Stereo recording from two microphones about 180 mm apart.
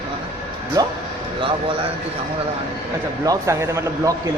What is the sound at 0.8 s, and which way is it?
Speech, 20° right (ahead or behind).